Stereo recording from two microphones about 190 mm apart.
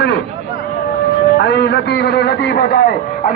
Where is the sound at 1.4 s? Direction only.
60° left (ahead or behind).